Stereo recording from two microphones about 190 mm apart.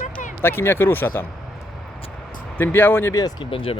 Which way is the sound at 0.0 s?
40° left (ahead or behind).